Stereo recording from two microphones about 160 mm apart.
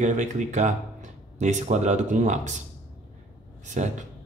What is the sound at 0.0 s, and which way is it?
Speech, 50° right (ahead or behind).